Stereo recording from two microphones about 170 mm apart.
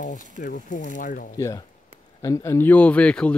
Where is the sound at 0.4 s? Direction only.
50° left (ahead or behind).